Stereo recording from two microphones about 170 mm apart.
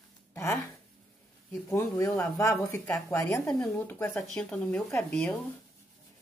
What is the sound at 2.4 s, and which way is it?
A woman's voice, 15° left (ahead or behind).